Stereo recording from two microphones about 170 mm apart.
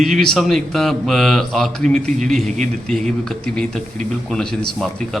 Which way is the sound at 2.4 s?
45° right (ahead or behind).